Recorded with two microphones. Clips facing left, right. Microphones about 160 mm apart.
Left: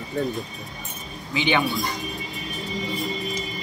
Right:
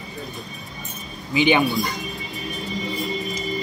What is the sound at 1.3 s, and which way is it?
Speech, 15° right (ahead or behind).